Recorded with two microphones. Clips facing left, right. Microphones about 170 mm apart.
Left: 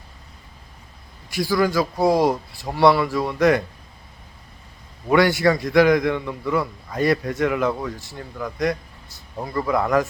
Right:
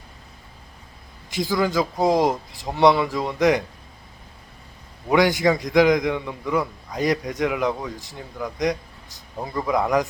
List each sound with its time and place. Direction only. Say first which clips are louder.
1.3 s a man's voice: left 2 dB; 20° right (ahead or behind)
5.0 s a man's voice: left 1 dB; 15° right (ahead or behind)